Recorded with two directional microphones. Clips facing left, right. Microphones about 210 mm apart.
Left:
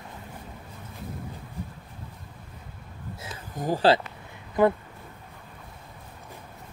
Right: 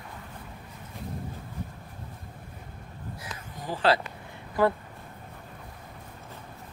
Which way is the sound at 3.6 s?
45° left (ahead or behind).